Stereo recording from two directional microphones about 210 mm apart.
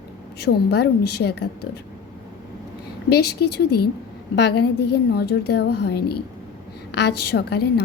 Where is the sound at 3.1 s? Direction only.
50° left (ahead or behind).